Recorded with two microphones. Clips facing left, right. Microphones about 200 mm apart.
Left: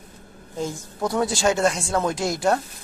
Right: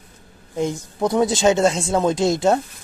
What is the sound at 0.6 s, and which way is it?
A woman's voice, 20° right (ahead or behind).